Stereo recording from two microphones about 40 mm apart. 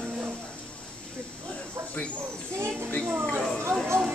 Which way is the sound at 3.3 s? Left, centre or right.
Centre.